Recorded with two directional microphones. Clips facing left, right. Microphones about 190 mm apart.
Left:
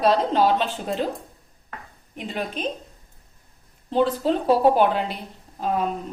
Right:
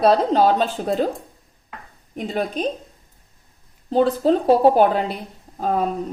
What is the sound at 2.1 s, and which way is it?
Speech, 40° right (ahead or behind).